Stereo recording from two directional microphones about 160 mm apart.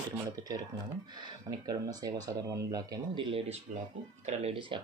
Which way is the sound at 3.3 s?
40° right (ahead or behind).